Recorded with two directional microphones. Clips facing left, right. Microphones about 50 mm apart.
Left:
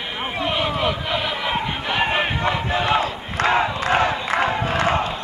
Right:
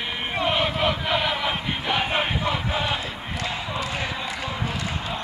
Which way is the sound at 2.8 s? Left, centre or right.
Left.